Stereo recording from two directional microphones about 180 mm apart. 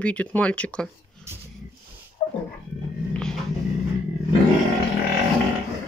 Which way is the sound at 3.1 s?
5° left (ahead or behind).